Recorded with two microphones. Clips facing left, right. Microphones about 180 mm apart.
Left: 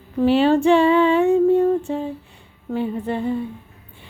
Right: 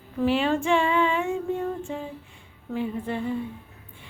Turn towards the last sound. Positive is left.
turn(degrees=35)  # may be behind; listen again after turning